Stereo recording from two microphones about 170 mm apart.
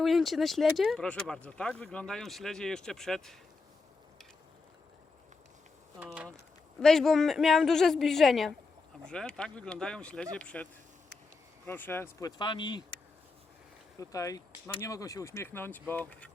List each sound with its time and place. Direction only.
0.0 s speech: centre (ahead or behind)
6.0 s speech: 5° right (ahead or behind); by 12.3 s 15° left (ahead or behind)
12.4 s speech: 25° left (ahead or behind)
14.0 s speech: 20° left (ahead or behind)